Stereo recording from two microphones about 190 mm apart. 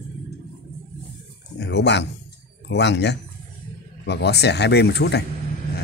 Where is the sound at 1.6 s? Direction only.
65° left (ahead or behind).